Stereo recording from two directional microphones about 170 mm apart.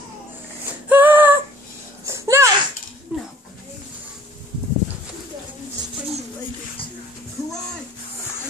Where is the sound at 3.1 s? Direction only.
5° right (ahead or behind).